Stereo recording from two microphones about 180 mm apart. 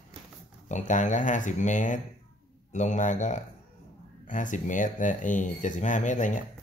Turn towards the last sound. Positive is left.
turn(degrees=45)  # may be behind; listen again after turning